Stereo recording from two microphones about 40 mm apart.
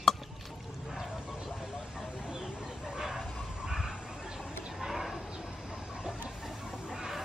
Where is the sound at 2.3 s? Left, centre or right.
Centre.